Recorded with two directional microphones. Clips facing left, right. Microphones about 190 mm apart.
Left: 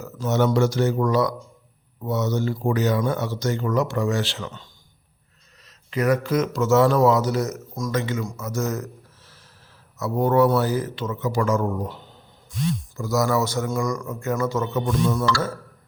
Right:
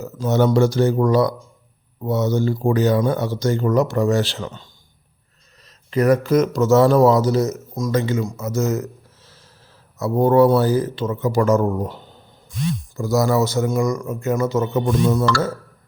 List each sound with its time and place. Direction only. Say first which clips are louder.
0.3 s speech: right 4 dB; 35° right (ahead or behind)
13.0 s a man's voice: right 4 dB; 30° right (ahead or behind)